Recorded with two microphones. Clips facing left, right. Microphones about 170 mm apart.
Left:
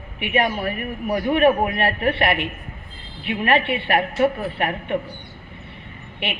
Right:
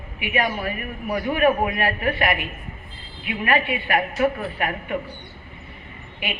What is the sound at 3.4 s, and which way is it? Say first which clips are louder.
A man's voice: left 2 dB; 30° left (ahead or behind).